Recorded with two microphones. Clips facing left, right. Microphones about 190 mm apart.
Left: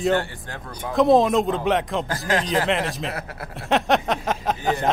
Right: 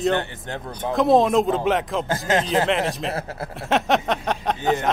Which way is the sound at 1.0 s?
Centre (ahead or behind).